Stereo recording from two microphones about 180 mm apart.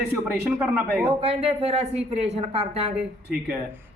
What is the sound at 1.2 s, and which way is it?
Speech, 35° right (ahead or behind).